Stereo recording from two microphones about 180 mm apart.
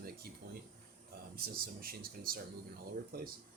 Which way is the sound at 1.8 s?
55° right (ahead or behind).